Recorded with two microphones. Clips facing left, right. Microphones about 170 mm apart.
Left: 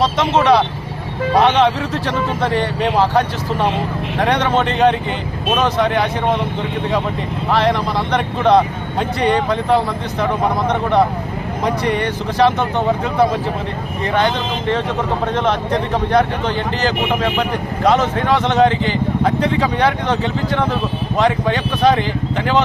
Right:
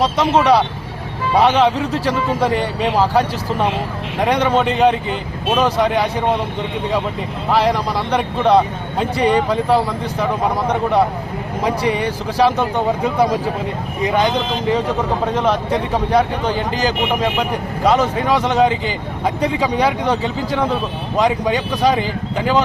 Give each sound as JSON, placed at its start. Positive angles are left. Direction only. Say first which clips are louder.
{"t": 0.0, "sound": "speech", "louder": "even", "side_deg": -10}
{"t": 7.5, "sound": "speech", "louder": "even", "side_deg": -10}